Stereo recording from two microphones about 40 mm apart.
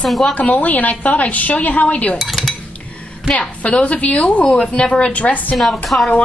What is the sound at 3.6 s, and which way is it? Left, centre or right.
A woman's voice, left.